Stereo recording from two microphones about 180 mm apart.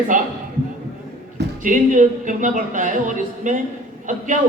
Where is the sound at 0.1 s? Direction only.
45° right (ahead or behind).